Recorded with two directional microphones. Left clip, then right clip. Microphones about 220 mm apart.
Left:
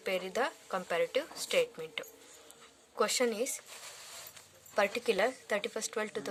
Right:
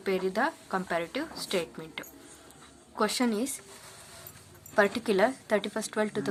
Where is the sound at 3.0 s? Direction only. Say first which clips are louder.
Right 2 dB; 35° left (ahead or behind).